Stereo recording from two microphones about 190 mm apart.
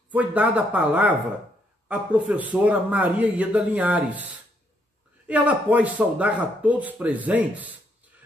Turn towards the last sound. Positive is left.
turn(degrees=-10)  # may be behind; listen again after turning